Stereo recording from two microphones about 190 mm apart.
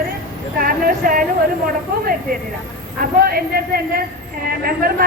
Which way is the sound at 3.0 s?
50° right (ahead or behind).